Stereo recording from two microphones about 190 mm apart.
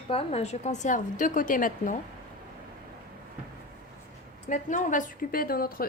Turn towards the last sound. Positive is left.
turn(degrees=50)  # may be behind; listen again after turning